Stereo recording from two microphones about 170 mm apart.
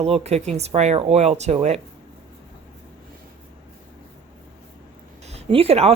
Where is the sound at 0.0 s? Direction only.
40° right (ahead or behind).